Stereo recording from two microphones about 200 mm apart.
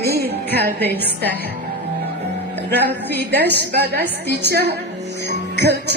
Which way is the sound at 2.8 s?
10° left (ahead or behind).